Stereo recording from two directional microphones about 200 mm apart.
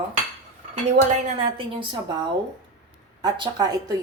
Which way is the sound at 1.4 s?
25° right (ahead or behind).